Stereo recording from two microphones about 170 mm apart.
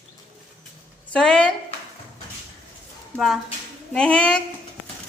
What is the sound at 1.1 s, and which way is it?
Speech, 5° left (ahead or behind).